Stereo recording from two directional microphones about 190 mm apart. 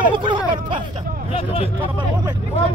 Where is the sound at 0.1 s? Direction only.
25° right (ahead or behind).